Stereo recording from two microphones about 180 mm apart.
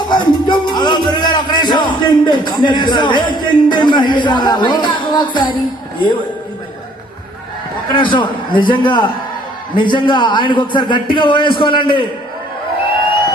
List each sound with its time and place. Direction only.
0.1 s music: 25° left (ahead or behind)
7.9 s a man's voice: 25° left (ahead or behind)